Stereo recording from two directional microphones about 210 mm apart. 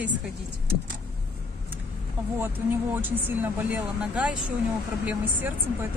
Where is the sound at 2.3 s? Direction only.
10° right (ahead or behind).